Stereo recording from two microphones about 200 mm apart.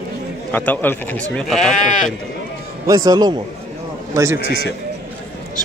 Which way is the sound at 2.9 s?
20° right (ahead or behind).